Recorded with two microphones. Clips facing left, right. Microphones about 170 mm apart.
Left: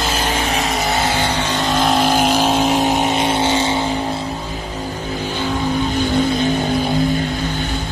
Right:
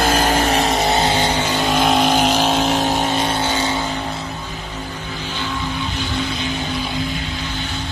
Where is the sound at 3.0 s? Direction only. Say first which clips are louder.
Left 3 dB; 20° left (ahead or behind).